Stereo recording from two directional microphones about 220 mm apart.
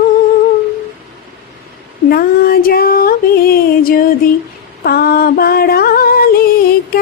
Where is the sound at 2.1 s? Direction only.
40° left (ahead or behind).